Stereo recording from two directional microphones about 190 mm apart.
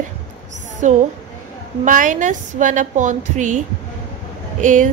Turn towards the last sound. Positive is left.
turn(degrees=-40)  # may be behind; listen again after turning